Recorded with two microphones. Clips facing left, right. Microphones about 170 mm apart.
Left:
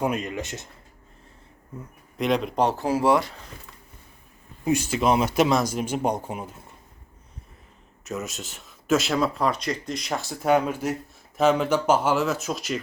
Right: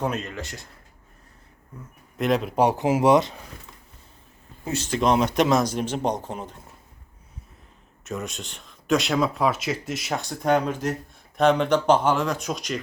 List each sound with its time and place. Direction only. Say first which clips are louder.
0.0 s speech: left 2 dB; 10° left (ahead or behind)
2.1 s speech: right 1 dB; centre (ahead or behind); by 3.3 s 20° right (ahead or behind)
4.6 s speech: left 1 dB; 10° left (ahead or behind)
8.0 s speech: even; centre (ahead or behind)